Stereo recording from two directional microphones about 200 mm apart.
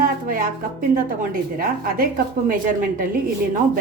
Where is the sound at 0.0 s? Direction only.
45° right (ahead or behind).